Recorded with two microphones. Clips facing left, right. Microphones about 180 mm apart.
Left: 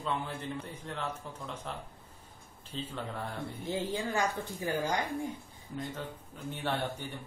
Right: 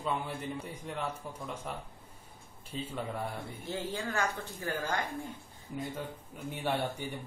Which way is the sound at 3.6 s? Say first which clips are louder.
Left 3 dB; 15° left (ahead or behind).